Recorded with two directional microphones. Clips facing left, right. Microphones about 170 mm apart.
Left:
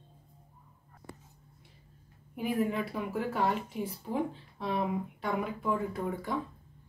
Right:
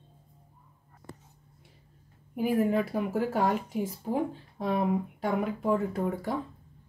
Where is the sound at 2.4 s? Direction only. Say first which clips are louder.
Right 5 dB; 45° right (ahead or behind).